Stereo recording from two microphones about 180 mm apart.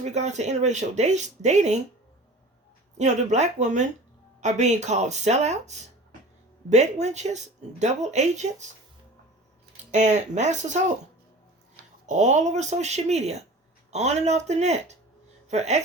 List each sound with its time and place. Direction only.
0.0 s a woman's voice: 40° right (ahead or behind)
3.0 s a woman's voice: 40° right (ahead or behind)
9.9 s a woman's voice: 40° right (ahead or behind)
12.0 s a woman's voice: 40° right (ahead or behind)